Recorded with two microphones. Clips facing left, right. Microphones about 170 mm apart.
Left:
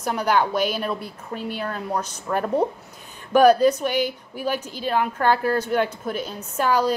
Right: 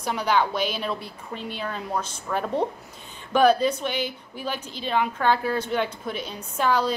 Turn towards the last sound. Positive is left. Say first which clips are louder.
# left 2 dB
turn(degrees=10)  # may be behind; listen again after turning